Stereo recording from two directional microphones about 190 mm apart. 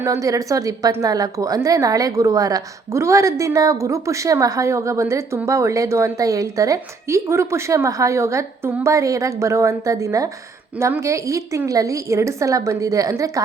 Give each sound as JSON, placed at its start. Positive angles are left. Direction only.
{"t": 0.0, "sound": "a woman's voice", "side_deg": -15}